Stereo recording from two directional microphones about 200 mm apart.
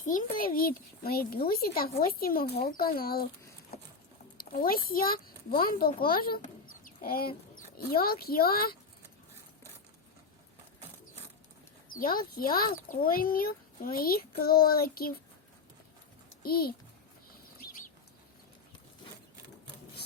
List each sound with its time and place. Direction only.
0.0 s a child's voice: 40° left (ahead or behind)
3.7 s boat: 50° left (ahead or behind)
4.4 s a child's voice: 45° left (ahead or behind)
11.9 s a child's voice: 45° left (ahead or behind)
16.4 s a child's voice: 50° left (ahead or behind)